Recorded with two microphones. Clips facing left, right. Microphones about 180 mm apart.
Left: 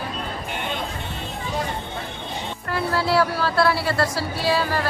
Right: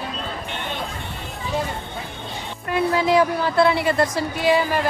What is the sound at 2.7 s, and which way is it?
Speech, 20° right (ahead or behind).